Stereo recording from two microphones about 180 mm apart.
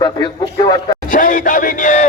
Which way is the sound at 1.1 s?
50° left (ahead or behind).